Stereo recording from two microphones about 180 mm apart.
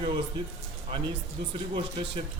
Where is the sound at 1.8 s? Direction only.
30° right (ahead or behind).